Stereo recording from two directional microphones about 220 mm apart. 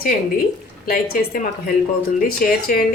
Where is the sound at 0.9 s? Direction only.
40° left (ahead or behind).